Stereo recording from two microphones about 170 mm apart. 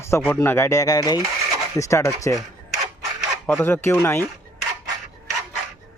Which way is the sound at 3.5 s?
10° left (ahead or behind).